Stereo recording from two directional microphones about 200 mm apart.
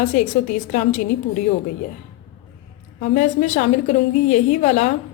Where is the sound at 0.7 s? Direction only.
40° left (ahead or behind).